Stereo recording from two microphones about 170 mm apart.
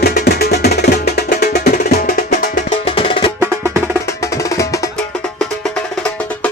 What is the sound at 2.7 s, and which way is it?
Music, 30° left (ahead or behind).